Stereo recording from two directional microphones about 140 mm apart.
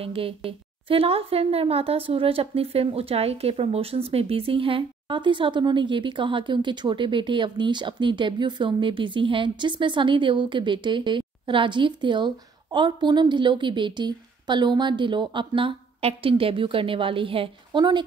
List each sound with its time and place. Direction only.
0.0 s speech: 40° right (ahead or behind)